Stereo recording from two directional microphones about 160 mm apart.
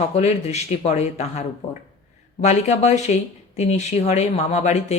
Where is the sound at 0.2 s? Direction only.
45° left (ahead or behind).